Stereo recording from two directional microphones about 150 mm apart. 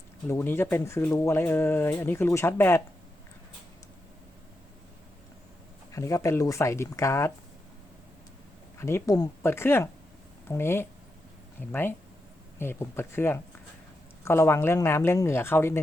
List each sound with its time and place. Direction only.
0.3 s speech: 15° left (ahead or behind)
5.9 s speech: 20° left (ahead or behind)
8.8 s speech: 15° left (ahead or behind)